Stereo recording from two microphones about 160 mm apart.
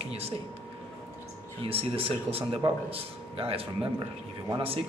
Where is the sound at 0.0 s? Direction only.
40° right (ahead or behind).